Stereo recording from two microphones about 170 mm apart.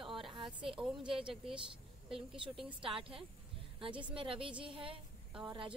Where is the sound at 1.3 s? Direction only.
5° right (ahead or behind).